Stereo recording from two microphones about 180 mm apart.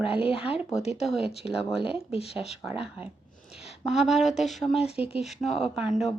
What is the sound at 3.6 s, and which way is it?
A woman's voice, centre (ahead or behind).